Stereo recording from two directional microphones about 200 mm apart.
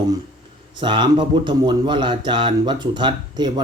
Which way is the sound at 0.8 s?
25° right (ahead or behind).